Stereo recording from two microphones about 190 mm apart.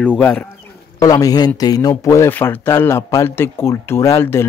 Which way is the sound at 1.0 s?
20° left (ahead or behind).